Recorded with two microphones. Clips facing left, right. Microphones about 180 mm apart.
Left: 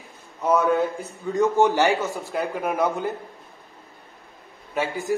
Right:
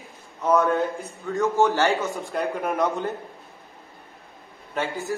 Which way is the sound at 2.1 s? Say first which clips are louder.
Even; centre (ahead or behind).